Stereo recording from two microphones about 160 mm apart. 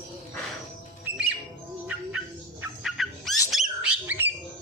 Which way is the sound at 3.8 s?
10° right (ahead or behind).